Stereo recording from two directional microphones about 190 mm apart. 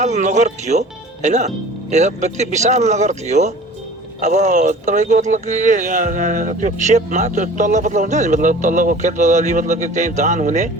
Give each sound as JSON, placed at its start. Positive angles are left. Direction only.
{"t": 0.0, "sound": "speech", "side_deg": -40}